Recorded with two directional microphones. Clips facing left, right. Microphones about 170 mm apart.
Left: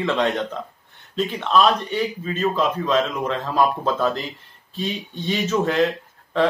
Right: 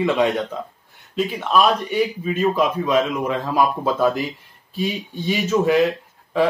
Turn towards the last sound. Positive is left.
turn(degrees=-10)  # may be behind; listen again after turning